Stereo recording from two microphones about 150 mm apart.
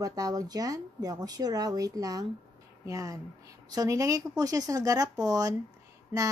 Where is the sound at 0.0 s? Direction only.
25° right (ahead or behind).